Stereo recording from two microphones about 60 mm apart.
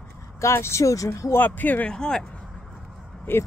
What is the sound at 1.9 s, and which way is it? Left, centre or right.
Speech, centre.